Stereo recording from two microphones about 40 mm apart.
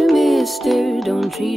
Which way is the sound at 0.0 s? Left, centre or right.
Centre.